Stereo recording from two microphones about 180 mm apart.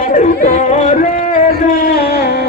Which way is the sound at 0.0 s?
45° left (ahead or behind).